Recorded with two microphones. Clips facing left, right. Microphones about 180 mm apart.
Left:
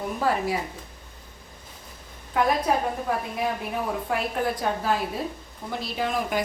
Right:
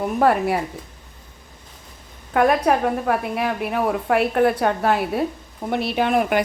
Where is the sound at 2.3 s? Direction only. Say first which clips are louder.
Right 6 dB; 70° right (ahead or behind).